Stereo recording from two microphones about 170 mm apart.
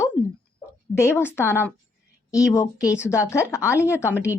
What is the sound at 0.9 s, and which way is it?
A woman's voice, 15° left (ahead or behind).